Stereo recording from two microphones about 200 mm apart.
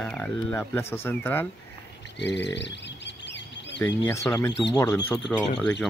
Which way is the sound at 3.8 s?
15° left (ahead or behind).